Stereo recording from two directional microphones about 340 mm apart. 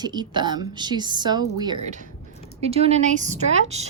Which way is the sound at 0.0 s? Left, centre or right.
Centre.